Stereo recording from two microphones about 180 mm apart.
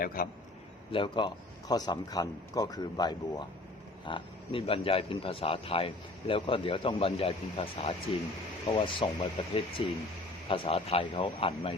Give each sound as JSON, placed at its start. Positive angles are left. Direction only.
{"t": 0.0, "sound": "a man's voice", "side_deg": 55}
{"t": 0.9, "sound": "speech", "side_deg": 30}